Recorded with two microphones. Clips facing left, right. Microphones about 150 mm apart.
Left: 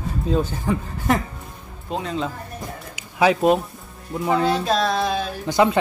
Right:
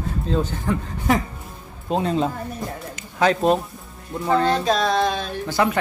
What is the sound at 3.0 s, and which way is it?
Speech, 10° left (ahead or behind).